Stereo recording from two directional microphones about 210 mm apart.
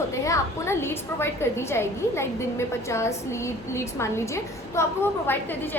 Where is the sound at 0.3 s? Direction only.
10° left (ahead or behind).